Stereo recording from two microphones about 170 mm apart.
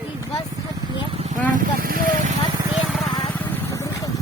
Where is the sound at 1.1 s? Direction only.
40° right (ahead or behind).